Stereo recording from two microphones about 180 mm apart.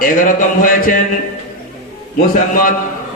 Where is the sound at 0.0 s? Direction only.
50° left (ahead or behind).